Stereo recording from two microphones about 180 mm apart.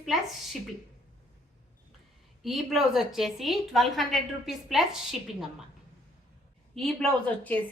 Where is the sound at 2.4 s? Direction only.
Centre (ahead or behind).